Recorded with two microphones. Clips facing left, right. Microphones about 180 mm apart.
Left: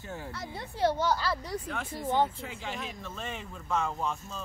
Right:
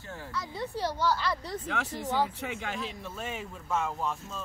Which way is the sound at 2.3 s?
70° right (ahead or behind).